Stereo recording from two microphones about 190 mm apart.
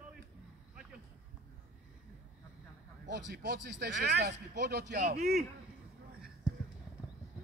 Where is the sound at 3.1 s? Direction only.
65° right (ahead or behind).